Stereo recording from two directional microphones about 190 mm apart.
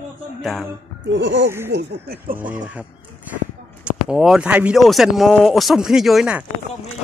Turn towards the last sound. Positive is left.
turn(degrees=-5)  # may be behind; listen again after turning